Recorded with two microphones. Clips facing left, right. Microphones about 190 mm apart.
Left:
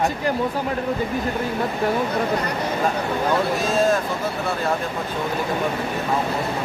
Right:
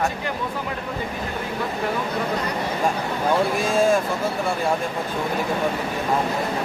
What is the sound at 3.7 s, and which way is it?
Speech, 10° right (ahead or behind).